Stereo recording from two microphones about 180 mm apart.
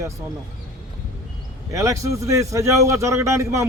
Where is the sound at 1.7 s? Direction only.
15° right (ahead or behind).